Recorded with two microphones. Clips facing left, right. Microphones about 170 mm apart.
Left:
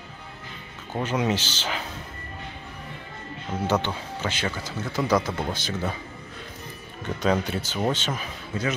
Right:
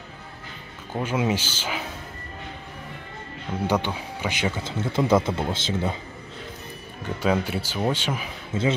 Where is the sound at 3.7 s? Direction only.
10° right (ahead or behind).